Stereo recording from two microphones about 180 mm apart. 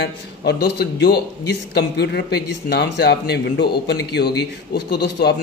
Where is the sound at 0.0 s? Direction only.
70° left (ahead or behind).